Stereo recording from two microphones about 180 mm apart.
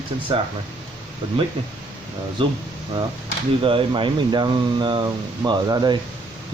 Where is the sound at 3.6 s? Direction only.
30° right (ahead or behind).